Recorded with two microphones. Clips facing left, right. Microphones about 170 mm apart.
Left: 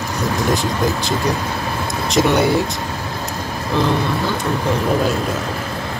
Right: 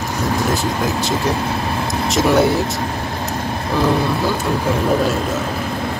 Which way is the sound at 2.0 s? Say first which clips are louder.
Right 1 dB; centre (ahead or behind).